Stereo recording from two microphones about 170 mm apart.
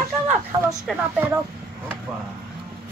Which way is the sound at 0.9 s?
Centre (ahead or behind).